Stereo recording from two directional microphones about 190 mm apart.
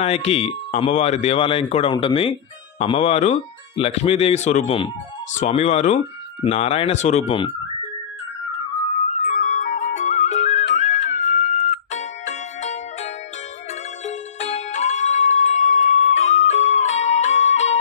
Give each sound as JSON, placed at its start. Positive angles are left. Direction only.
{"t": 0.0, "sound": "speech", "side_deg": 30}
{"t": 9.1, "sound": "music", "side_deg": 40}